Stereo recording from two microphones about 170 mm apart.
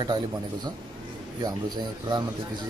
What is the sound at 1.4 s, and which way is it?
Speech, 25° right (ahead or behind).